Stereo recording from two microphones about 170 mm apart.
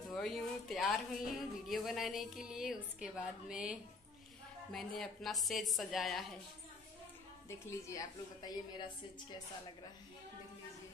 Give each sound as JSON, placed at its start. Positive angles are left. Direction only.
{"t": 0.1, "sound": "a woman's voice", "side_deg": 0}
{"t": 4.7, "sound": "a woman's voice", "side_deg": 0}
{"t": 7.4, "sound": "a woman's voice", "side_deg": 20}